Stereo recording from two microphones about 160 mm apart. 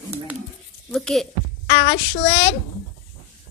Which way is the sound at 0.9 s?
Centre (ahead or behind).